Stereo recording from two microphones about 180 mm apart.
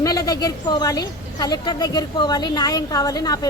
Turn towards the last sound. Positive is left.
turn(degrees=20)  # may be behind; listen again after turning